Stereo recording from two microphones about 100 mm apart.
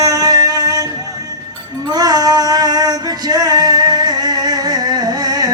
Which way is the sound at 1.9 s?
40° right (ahead or behind).